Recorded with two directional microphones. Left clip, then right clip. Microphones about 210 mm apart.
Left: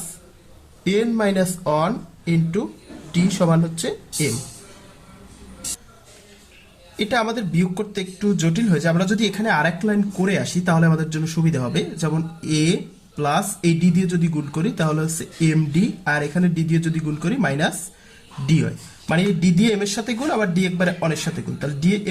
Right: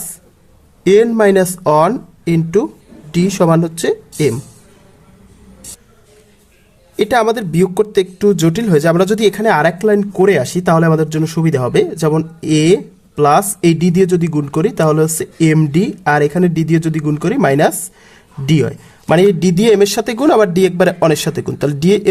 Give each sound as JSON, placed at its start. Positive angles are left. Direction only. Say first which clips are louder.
{"t": 0.9, "sound": "speech", "louder": "right 11 dB", "side_deg": -40}
{"t": 6.9, "sound": "speech", "louder": "right 9 dB", "side_deg": -50}
{"t": 19.0, "sound": "speech", "louder": "right 11 dB", "side_deg": -55}